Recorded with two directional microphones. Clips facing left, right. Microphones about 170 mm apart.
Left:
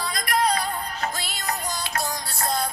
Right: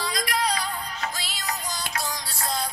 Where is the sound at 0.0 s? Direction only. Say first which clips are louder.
Left 3 dB; 55° left (ahead or behind).